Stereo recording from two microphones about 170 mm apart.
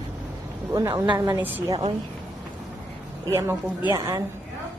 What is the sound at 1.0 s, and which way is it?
Speech, 25° right (ahead or behind).